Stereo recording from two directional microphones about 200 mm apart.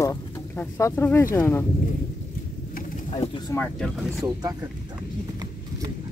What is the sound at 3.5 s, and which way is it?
Speech, 5° left (ahead or behind).